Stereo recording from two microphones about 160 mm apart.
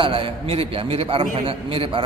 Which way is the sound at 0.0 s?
35° right (ahead or behind).